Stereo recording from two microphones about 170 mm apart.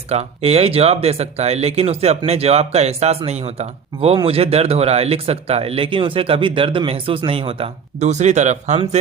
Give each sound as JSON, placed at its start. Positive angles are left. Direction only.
{"t": 0.1, "sound": "speech", "side_deg": -35}